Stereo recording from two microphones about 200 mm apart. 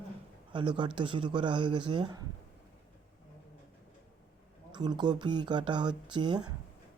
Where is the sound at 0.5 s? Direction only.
25° right (ahead or behind).